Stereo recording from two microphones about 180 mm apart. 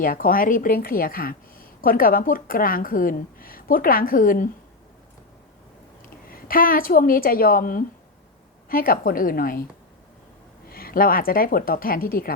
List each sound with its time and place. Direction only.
0.0 s a woman's voice: 55° left (ahead or behind)
6.2 s a woman's voice: 55° left (ahead or behind)
10.7 s a woman's voice: 55° left (ahead or behind)